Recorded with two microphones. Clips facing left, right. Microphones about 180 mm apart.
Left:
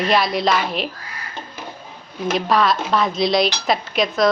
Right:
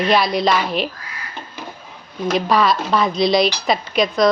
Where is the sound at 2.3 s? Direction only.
Centre (ahead or behind).